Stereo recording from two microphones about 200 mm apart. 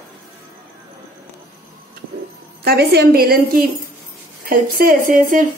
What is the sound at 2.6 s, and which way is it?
A woman's voice, 55° right (ahead or behind).